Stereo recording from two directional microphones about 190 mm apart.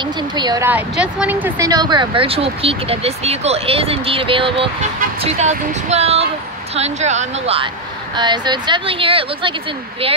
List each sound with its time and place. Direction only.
0.4 s speech: 20° right (ahead or behind)
0.7 s speech: 5° right (ahead or behind)
1.7 s speech: 20° right (ahead or behind)